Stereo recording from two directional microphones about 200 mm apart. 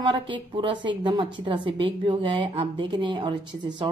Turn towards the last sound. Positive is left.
turn(degrees=-25)  # may be behind; listen again after turning